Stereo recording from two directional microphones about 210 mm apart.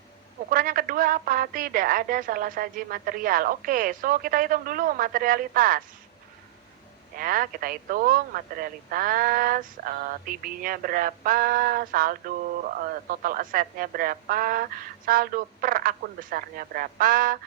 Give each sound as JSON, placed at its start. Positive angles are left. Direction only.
{"t": 0.5, "sound": "a woman's voice", "side_deg": -40}
{"t": 7.2, "sound": "a woman's voice", "side_deg": -40}